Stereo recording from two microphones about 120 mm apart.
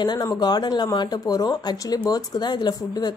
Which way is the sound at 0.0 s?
35° left (ahead or behind).